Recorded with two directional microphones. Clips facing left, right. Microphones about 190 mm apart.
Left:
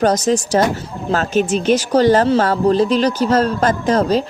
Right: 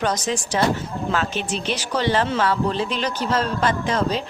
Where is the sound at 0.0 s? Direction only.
40° left (ahead or behind).